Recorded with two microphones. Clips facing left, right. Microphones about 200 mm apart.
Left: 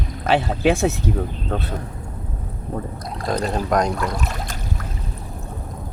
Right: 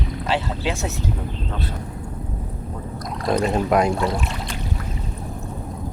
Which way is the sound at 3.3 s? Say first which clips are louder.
Right 2 dB; 5° right (ahead or behind).